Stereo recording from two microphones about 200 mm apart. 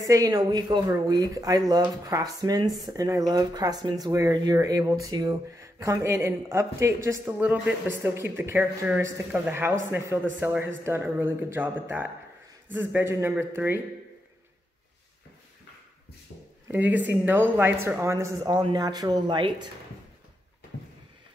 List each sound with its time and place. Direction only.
0.0 s speech: 15° right (ahead or behind)
16.6 s speech: 10° right (ahead or behind)